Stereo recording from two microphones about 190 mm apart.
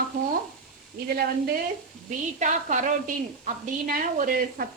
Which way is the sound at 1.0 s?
55° right (ahead or behind).